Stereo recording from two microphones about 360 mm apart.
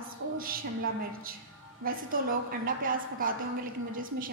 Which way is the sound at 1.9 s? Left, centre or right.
Right.